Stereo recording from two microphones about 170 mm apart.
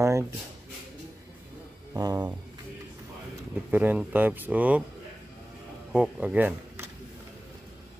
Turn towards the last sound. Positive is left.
turn(degrees=-10)  # may be behind; listen again after turning